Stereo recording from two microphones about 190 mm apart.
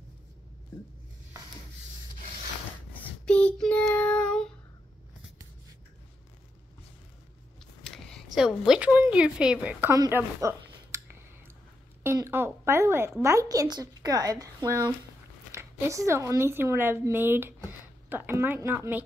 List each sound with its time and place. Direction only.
2.9 s child singing: 5° left (ahead or behind)
7.8 s a sound: centre (ahead or behind)
8.4 s a woman's voice: 5° right (ahead or behind)